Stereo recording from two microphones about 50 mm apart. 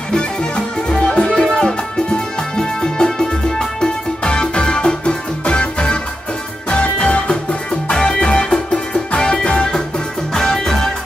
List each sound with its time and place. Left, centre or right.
0.1 s music: centre